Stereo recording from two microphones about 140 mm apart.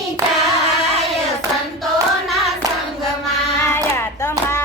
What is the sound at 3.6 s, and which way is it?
Hands, 20° left (ahead or behind).